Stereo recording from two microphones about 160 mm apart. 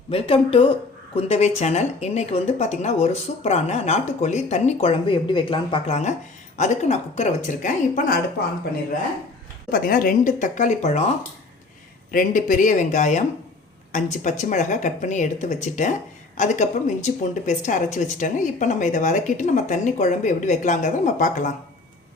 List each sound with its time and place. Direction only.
0.1 s speech: 35° left (ahead or behind); by 8.2 s 55° left (ahead or behind)
9.7 s speech: 65° left (ahead or behind); by 11.0 s 45° left (ahead or behind)
12.1 s speech: 55° left (ahead or behind)